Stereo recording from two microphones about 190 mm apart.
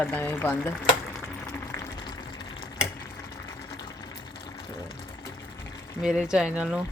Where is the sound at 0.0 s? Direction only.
10° left (ahead or behind).